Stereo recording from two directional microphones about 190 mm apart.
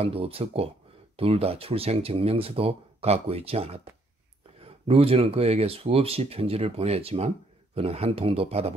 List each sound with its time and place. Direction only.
0.0 s speech: 30° right (ahead or behind)